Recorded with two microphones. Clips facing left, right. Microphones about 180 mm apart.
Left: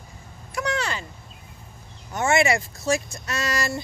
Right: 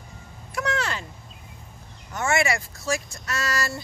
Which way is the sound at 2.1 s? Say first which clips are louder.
Left 3 dB; 20° left (ahead or behind).